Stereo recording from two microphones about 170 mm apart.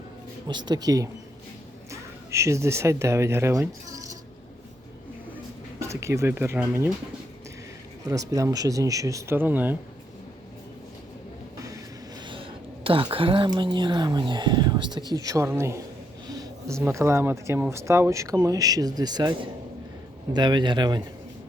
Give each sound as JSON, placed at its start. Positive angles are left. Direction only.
{"t": 0.4, "sound": "speech", "side_deg": -25}
{"t": 5.9, "sound": "speech", "side_deg": -15}
{"t": 8.0, "sound": "speech", "side_deg": -20}
{"t": 12.2, "sound": "speech", "side_deg": -30}
{"t": 16.2, "sound": "a sound", "side_deg": -20}
{"t": 16.8, "sound": "speech", "side_deg": -15}